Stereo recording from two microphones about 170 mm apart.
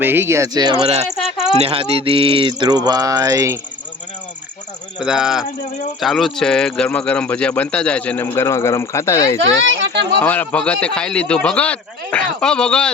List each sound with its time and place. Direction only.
0.0 s speech: 10° right (ahead or behind)
0.8 s speech: 40° right (ahead or behind)
1.6 s a sound: 35° right (ahead or behind)
4.9 s a man's voice: 5° right (ahead or behind); by 9.6 s 20° left (ahead or behind)
9.6 s a sound: 90° right
10.2 s a man's voice: 10° left (ahead or behind)